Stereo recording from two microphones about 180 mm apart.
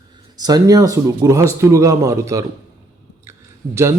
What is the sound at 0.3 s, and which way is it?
A man's voice, 20° right (ahead or behind).